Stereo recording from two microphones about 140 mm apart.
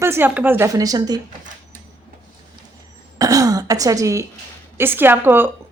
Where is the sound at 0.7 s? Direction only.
25° right (ahead or behind).